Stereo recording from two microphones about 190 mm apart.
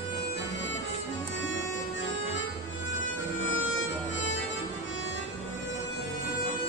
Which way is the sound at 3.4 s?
90° left.